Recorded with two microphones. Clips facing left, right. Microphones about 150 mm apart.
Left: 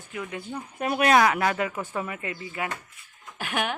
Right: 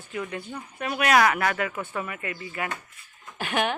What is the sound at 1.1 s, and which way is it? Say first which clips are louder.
Speech: right 1 dB; 20° left (ahead or behind).